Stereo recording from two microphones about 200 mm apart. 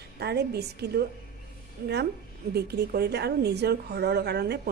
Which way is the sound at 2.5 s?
55° right (ahead or behind).